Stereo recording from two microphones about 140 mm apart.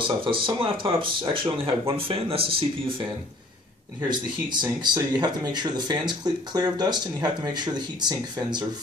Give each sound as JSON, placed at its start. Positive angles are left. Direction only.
{"t": 0.0, "sound": "speech", "side_deg": -40}
{"t": 4.1, "sound": "speech", "side_deg": -30}